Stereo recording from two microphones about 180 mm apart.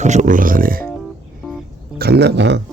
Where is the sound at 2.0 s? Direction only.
65° right (ahead or behind).